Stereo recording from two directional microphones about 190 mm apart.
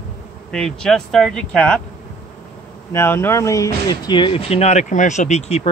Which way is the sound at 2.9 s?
15° left (ahead or behind).